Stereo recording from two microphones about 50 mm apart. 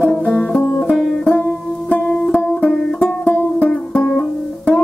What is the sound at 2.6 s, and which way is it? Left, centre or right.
Music, centre.